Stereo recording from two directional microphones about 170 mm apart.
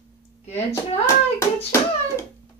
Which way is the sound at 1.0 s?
15° left (ahead or behind).